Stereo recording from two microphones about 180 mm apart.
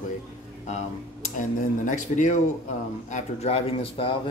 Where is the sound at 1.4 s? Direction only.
45° left (ahead or behind).